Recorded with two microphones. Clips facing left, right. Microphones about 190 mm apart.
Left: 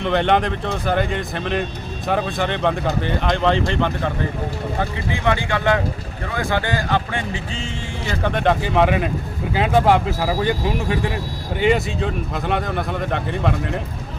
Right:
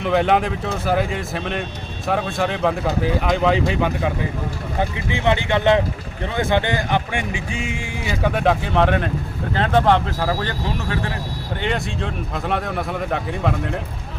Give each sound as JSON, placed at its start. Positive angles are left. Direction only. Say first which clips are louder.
{"t": 0.0, "sound": "speech", "louder": "even", "side_deg": -5}
{"t": 4.8, "sound": "speech", "louder": "right 3 dB", "side_deg": -20}